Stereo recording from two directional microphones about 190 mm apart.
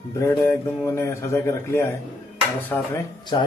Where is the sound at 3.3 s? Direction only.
25° left (ahead or behind).